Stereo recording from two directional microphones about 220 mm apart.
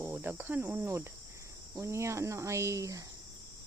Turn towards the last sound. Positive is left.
turn(degrees=-15)  # may be behind; listen again after turning